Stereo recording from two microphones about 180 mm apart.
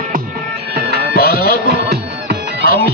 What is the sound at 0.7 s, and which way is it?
Music, 60° right (ahead or behind).